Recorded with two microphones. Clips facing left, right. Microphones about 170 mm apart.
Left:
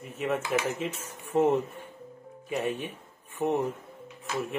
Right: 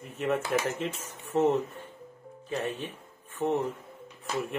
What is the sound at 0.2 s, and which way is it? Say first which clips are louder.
Speech: even; 5° left (ahead or behind).